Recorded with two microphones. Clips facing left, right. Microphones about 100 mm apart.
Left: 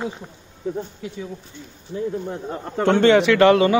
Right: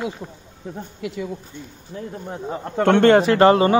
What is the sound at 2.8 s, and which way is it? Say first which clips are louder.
Speech: right 1 dB; 55° right (ahead or behind).